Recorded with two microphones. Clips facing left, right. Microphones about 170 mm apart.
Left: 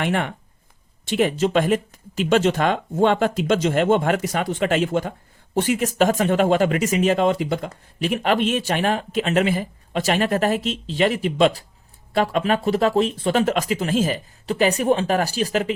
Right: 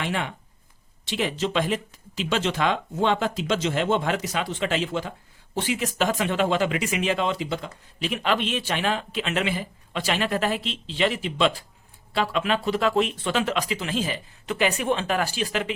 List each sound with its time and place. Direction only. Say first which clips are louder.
0.0 s speech: left 5 dB; 55° left (ahead or behind)